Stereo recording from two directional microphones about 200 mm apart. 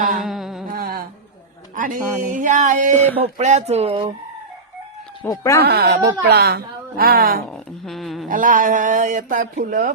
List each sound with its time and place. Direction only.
0.2 s humming: centre (ahead or behind)
0.7 s a sound: 45° right (ahead or behind)
1.7 s speech: 40° right (ahead or behind)
5.2 s speech: 15° left (ahead or behind)
5.6 s a woman's voice: 50° right (ahead or behind)
7.5 s a sound: centre (ahead or behind)
8.3 s speech: 40° right (ahead or behind)